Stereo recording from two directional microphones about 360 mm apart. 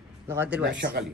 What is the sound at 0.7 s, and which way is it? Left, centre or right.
Speech, right.